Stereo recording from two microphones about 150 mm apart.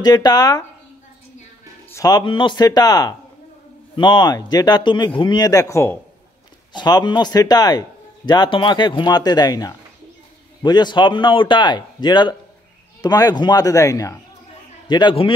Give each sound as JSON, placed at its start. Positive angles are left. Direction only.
{"t": 0.0, "sound": "speech", "side_deg": 25}
{"t": 1.9, "sound": "speech", "side_deg": 25}
{"t": 6.7, "sound": "a man's voice", "side_deg": 30}